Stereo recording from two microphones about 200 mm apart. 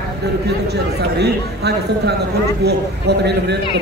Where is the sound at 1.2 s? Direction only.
55° right (ahead or behind).